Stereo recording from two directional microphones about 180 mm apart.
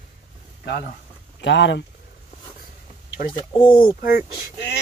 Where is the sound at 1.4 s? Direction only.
90° left.